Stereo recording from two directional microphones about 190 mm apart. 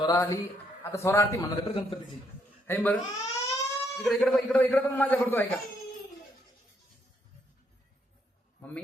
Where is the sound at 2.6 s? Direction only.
10° left (ahead or behind).